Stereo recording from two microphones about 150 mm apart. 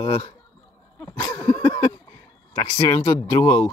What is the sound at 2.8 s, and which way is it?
Speech, 20° left (ahead or behind).